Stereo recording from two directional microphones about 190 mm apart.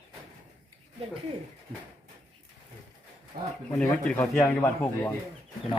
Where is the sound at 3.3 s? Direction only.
45° right (ahead or behind).